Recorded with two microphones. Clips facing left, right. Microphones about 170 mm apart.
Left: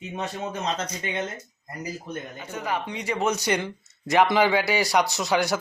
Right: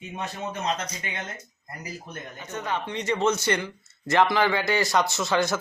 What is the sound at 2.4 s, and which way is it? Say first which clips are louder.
Speech: even; 10° left (ahead or behind).